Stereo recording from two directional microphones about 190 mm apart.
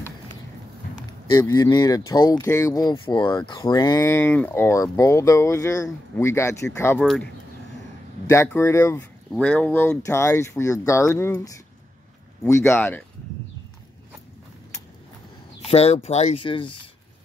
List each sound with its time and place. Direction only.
1.3 s speech: 20° left (ahead or behind)
8.3 s speech: 15° left (ahead or behind)
15.6 s speech: 35° left (ahead or behind)